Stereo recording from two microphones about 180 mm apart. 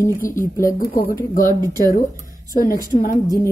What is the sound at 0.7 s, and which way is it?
Speech, 50° left (ahead or behind).